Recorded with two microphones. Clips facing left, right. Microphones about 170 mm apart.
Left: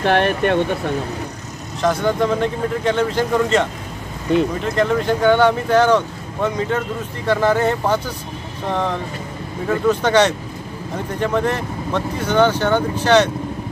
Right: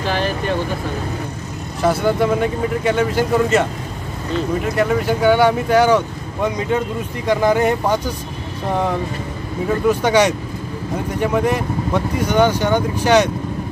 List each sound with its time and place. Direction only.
0.0 s speech: 65° left (ahead or behind)
1.8 s speech: 10° right (ahead or behind)